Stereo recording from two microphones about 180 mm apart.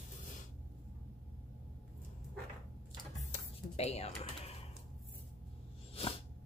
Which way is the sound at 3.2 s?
40° left (ahead or behind).